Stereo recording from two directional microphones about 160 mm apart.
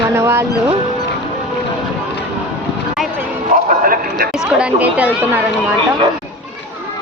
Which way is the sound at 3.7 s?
60° right (ahead or behind).